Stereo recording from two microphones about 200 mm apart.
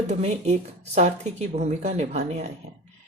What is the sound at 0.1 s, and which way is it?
Speech, 35° right (ahead or behind).